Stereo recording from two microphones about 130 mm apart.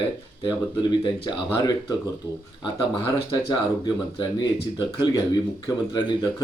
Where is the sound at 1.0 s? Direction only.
30° left (ahead or behind).